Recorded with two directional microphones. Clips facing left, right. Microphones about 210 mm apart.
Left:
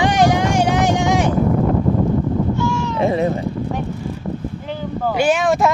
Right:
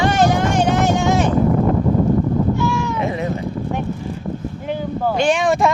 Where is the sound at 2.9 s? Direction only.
35° left (ahead or behind).